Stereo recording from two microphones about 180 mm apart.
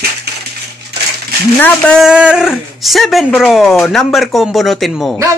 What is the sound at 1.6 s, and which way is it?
Speech, 5° left (ahead or behind).